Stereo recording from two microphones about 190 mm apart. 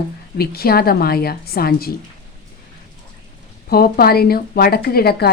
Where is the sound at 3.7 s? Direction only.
55° left (ahead or behind).